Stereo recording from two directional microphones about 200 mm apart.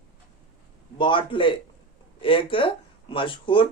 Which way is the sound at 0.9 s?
25° left (ahead or behind).